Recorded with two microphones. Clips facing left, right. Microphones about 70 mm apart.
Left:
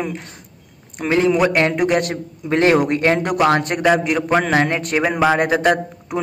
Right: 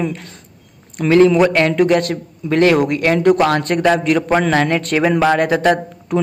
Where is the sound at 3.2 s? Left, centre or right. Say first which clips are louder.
Right 3 dB; centre.